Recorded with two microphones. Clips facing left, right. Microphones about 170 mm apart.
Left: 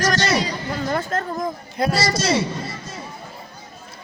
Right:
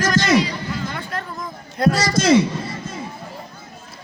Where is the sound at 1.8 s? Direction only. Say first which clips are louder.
Right 3 dB; 5° left (ahead or behind).